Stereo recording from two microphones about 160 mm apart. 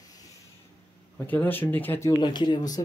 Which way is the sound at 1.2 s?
10° left (ahead or behind).